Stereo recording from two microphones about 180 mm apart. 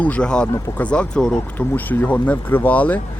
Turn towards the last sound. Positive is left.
turn(degrees=10)  # may be behind; listen again after turning